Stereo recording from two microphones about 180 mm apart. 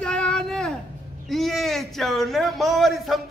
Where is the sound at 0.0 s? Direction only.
5° left (ahead or behind).